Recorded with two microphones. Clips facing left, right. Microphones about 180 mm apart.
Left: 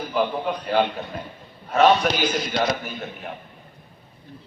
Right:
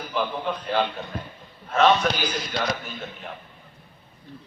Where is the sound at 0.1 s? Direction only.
10° left (ahead or behind).